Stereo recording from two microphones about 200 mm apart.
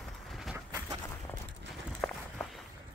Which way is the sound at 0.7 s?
20° right (ahead or behind).